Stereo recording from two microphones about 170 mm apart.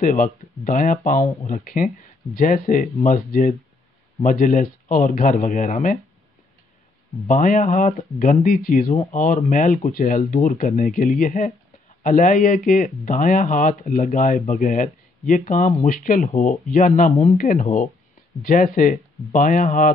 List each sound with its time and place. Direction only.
0.0 s speech: 50° left (ahead or behind)
7.2 s speech: 50° left (ahead or behind)
8.9 s speech: 35° left (ahead or behind)
9.2 s speech: 50° left (ahead or behind)